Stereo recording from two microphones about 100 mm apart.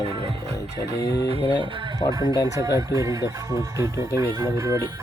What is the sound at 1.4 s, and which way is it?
Music, 55° left (ahead or behind).